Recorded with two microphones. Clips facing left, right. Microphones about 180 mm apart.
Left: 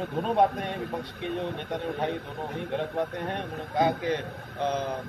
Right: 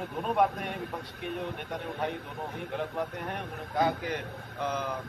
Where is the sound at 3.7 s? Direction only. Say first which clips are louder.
Left 3 dB; 25° left (ahead or behind).